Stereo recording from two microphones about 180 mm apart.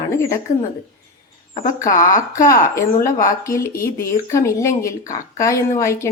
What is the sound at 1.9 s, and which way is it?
Speech, 50° left (ahead or behind).